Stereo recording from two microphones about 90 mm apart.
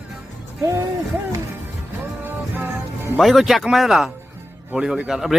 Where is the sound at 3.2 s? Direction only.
Centre (ahead or behind).